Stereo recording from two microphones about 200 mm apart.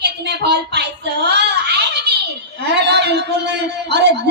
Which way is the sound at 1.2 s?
55° right (ahead or behind).